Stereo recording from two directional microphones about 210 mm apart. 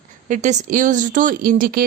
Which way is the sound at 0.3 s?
35° right (ahead or behind).